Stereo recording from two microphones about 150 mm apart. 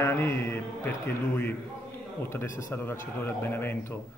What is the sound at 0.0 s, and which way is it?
Speech, 15° left (ahead or behind).